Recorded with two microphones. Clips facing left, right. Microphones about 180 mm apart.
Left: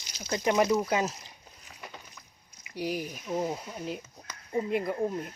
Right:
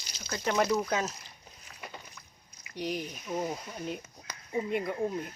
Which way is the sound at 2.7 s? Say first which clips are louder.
Left 2 dB; 5° left (ahead or behind).